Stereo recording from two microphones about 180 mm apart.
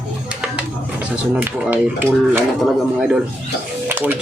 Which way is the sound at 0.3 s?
5° right (ahead or behind).